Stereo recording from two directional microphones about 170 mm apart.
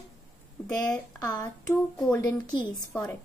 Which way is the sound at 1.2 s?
20° left (ahead or behind).